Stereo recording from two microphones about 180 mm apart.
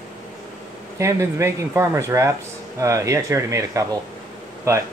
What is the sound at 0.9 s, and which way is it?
Speech, 15° right (ahead or behind).